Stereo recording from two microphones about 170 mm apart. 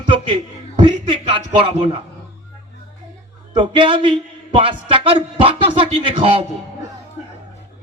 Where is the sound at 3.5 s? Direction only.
30° right (ahead or behind).